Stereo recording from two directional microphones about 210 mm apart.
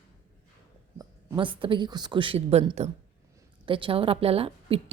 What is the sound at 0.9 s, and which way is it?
A woman's voice, 20° right (ahead or behind).